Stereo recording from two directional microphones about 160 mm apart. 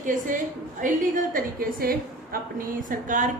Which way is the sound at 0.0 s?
55° right (ahead or behind).